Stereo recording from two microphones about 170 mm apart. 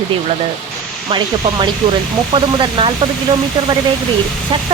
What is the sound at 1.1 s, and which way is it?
Speech, 25° right (ahead or behind).